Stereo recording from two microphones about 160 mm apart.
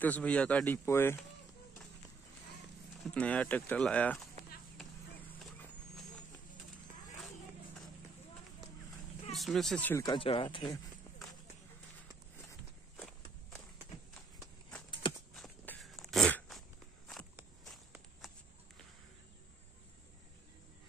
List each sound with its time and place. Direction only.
0.0 s speech: 10° left (ahead or behind)
3.0 s speech: 5° left (ahead or behind)
9.3 s speech: centre (ahead or behind)
10.0 s speech: 35° left (ahead or behind)
12.9 s walk: 5° left (ahead or behind)
15.3 s walk: 5° left (ahead or behind)
15.8 s dog: centre (ahead or behind)